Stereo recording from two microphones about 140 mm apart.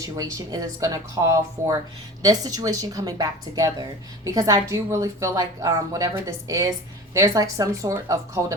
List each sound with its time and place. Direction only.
0.0 s a woman's voice: 25° right (ahead or behind)